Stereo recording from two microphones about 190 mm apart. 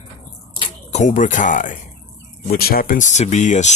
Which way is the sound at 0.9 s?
40° left (ahead or behind).